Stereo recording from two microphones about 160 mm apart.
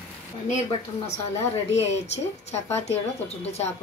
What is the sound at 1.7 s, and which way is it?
A woman's voice, 40° left (ahead or behind).